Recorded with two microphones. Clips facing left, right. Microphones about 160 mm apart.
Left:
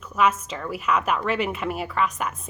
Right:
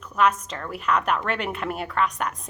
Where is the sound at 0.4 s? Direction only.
5° left (ahead or behind).